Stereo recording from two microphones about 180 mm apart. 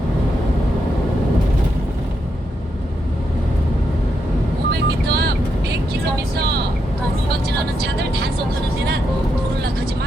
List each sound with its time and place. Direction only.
4.7 s vehicle: 60° right (ahead or behind)